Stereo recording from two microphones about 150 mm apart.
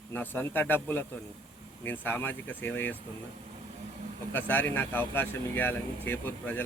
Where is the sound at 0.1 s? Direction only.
15° left (ahead or behind).